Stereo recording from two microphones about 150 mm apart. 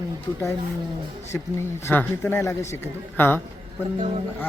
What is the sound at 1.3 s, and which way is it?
A man's voice, 15° left (ahead or behind).